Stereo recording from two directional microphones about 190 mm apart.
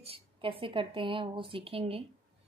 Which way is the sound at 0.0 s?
30° right (ahead or behind).